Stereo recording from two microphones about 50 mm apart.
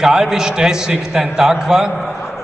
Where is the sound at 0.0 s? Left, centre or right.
Centre.